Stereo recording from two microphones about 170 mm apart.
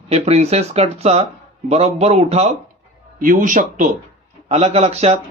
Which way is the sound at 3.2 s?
50° right (ahead or behind).